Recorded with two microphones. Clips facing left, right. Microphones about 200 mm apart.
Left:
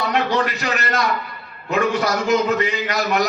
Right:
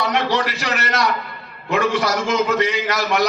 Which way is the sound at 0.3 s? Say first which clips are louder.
Even; 90° right.